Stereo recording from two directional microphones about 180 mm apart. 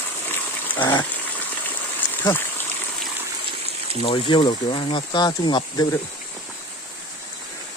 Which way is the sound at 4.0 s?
30° left (ahead or behind).